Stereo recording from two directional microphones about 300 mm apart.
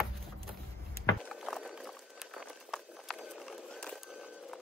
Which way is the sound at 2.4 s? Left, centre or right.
Centre.